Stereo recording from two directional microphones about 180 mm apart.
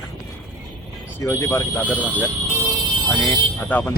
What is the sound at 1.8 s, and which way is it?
Speech, 10° right (ahead or behind).